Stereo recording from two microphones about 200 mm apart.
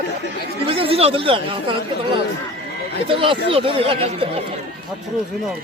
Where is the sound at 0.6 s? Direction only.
30° right (ahead or behind).